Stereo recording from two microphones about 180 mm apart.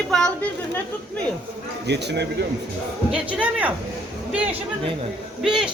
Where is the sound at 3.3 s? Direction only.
10° right (ahead or behind).